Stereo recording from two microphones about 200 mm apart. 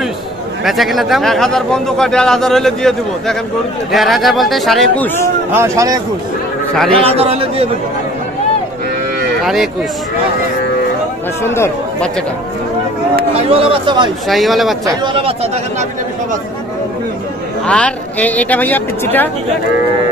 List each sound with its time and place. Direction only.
0.7 s speech: centre (ahead or behind)
5.5 s speech: 15° right (ahead or behind)
6.9 s speech: 30° right (ahead or behind)
9.4 s speech: centre (ahead or behind)
11.4 s speech: 10° left (ahead or behind)
13.4 s speech: 30° right (ahead or behind)
14.2 s speech: centre (ahead or behind)
14.9 s speech: 25° right (ahead or behind)
17.6 s speech: 5° left (ahead or behind)